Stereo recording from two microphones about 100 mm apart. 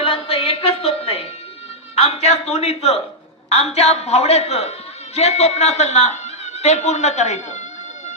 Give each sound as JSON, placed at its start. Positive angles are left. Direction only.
{"t": 0.0, "sound": "music", "side_deg": 65}
{"t": 2.0, "sound": "a sound", "side_deg": 90}
{"t": 3.5, "sound": "a woman's voice", "side_deg": 90}